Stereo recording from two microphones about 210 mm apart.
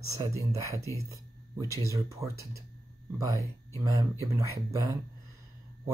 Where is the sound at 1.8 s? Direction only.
15° right (ahead or behind).